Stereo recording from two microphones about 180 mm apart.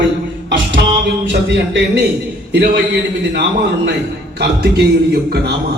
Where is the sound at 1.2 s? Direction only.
80° right.